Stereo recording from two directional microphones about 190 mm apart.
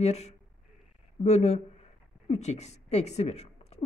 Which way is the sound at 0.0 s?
35° left (ahead or behind).